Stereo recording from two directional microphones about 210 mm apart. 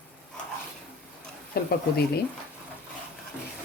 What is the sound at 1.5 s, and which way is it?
Speech, 45° left (ahead or behind).